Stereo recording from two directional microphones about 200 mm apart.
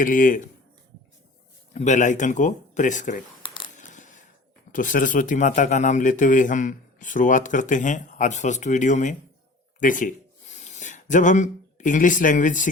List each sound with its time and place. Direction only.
0.0 s speech: 40° left (ahead or behind)
1.7 s speech: 35° left (ahead or behind)
3.4 s coin: 25° left (ahead or behind)
3.8 s coin: 40° left (ahead or behind)
4.7 s speech: 40° left (ahead or behind)